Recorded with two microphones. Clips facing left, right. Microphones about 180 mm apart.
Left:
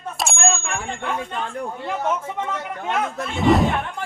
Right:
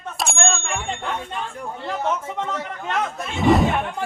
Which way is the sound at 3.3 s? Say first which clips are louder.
Even; centre (ahead or behind).